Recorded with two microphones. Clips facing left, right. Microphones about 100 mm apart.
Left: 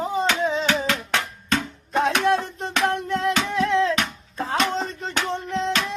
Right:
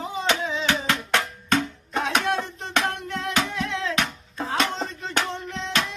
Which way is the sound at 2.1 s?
40° left (ahead or behind).